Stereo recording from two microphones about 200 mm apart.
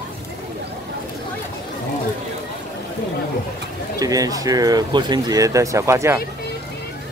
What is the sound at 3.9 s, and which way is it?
Speech, 15° right (ahead or behind).